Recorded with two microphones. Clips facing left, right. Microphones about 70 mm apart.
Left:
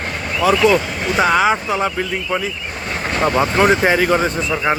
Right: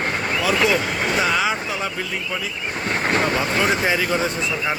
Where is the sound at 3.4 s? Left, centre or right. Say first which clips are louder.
Left 6 dB; left.